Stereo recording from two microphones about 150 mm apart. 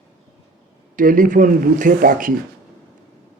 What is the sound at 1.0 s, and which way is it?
Speech, 60° right (ahead or behind).